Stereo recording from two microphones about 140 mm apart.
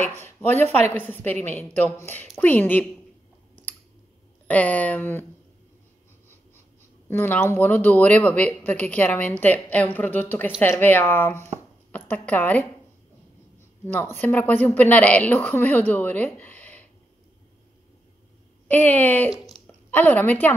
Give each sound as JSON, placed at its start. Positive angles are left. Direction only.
{"t": 0.2, "sound": "speech", "side_deg": 15}
{"t": 4.5, "sound": "speech", "side_deg": 10}
{"t": 7.1, "sound": "a woman's voice", "side_deg": 10}
{"t": 13.8, "sound": "speech", "side_deg": 15}
{"t": 18.7, "sound": "speech", "side_deg": 10}